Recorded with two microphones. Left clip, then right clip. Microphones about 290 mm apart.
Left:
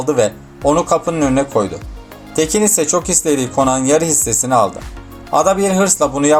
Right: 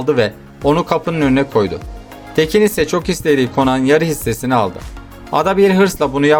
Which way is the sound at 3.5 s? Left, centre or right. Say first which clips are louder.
Left 1 dB; right.